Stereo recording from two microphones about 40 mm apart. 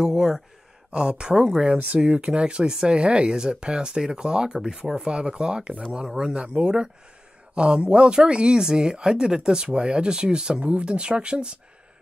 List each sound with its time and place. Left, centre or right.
0.0 s a sound: centre
0.9 s speech: right
10.6 s speech: right